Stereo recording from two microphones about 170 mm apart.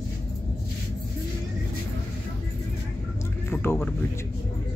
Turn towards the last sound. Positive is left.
turn(degrees=15)  # may be behind; listen again after turning